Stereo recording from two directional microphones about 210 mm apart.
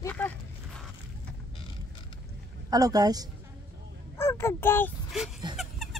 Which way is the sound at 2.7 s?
15° right (ahead or behind).